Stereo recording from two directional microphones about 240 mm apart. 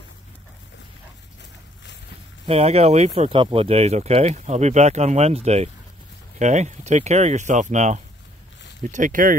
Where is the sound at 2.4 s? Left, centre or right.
Right.